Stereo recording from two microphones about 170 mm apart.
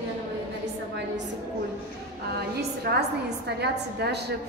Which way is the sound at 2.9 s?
70° right (ahead or behind).